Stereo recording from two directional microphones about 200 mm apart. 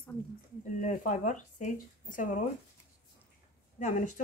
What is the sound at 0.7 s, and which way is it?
Speech, 40° left (ahead or behind).